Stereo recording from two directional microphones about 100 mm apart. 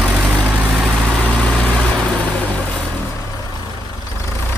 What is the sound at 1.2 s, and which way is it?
Vehicle, 10° left (ahead or behind).